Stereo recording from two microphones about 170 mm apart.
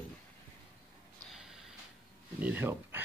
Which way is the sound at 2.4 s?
10° right (ahead or behind).